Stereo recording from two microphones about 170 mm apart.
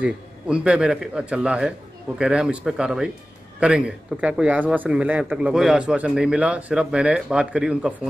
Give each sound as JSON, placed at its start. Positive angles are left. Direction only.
{"t": 0.0, "sound": "a man's voice", "side_deg": -5}